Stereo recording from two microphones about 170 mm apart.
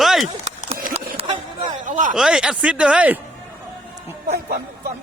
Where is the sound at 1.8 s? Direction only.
50° right (ahead or behind).